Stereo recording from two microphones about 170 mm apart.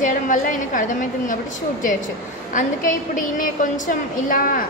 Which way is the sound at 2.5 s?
50° left (ahead or behind).